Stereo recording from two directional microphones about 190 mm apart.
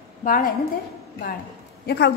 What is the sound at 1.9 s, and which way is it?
Speech, 60° left (ahead or behind).